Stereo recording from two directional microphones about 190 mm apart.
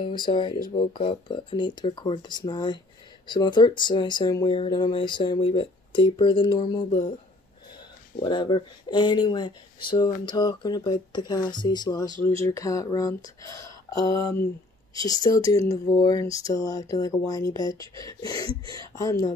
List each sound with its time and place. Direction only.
0.3 s speech: 25° left (ahead or behind)
8.2 s speech: 25° left (ahead or behind)
15.0 s speech: 20° left (ahead or behind)